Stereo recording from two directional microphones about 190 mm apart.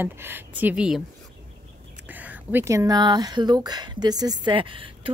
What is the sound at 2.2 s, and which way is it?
Speech, 10° right (ahead or behind).